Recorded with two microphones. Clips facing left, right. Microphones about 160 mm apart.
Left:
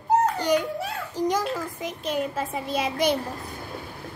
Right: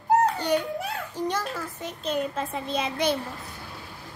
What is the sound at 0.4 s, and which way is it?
A child's voice, 10° left (ahead or behind).